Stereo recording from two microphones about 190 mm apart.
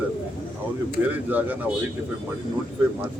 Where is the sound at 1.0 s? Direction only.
10° right (ahead or behind).